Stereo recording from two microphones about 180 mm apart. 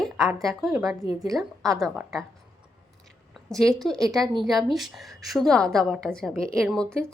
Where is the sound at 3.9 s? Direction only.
20° right (ahead or behind).